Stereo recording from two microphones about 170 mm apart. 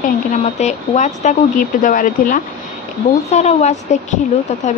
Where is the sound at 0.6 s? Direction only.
45° left (ahead or behind).